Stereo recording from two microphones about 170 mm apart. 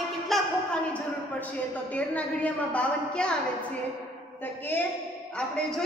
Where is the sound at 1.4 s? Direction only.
10° left (ahead or behind).